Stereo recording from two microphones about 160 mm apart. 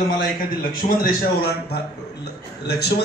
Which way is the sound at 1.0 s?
80° left.